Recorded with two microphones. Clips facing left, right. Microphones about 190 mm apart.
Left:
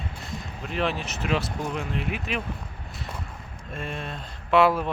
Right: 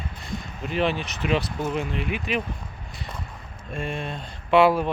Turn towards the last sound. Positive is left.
turn(degrees=0)  # may be behind; listen again after turning